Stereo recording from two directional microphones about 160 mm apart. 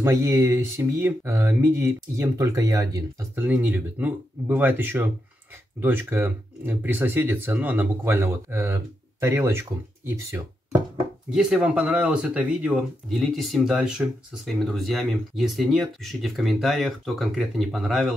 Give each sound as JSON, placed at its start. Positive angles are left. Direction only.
{"t": 0.0, "sound": "speech", "side_deg": -20}
{"t": 3.4, "sound": "speech", "side_deg": -10}